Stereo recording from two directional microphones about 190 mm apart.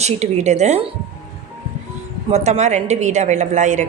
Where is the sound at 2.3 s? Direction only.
35° right (ahead or behind).